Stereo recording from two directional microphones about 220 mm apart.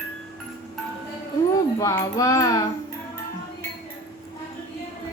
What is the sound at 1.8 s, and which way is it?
Speech, 15° left (ahead or behind).